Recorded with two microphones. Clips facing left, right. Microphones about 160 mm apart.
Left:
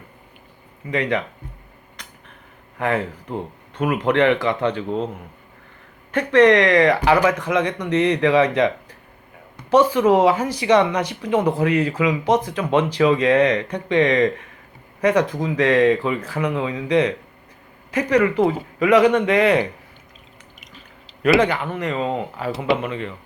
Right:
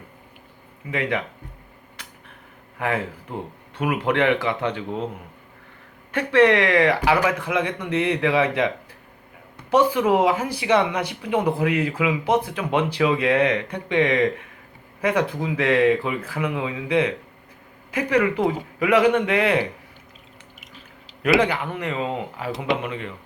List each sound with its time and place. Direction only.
0.9 s speech: 10° right (ahead or behind)
2.0 s a sound: 10° right (ahead or behind)
2.7 s speech: 10° right (ahead or behind)
6.1 s speech: 10° right (ahead or behind)
21.2 s speech: 15° right (ahead or behind)
21.9 s speech: 35° left (ahead or behind)
22.5 s speech: 5° left (ahead or behind)
22.8 s speech: 10° right (ahead or behind)